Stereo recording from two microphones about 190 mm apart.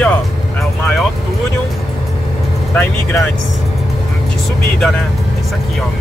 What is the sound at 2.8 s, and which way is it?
Speech, 5° left (ahead or behind).